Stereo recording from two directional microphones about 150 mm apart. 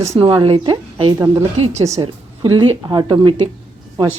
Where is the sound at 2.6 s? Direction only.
30° right (ahead or behind).